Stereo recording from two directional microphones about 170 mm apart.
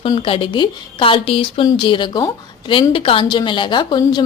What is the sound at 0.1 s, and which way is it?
A woman's voice, 30° left (ahead or behind).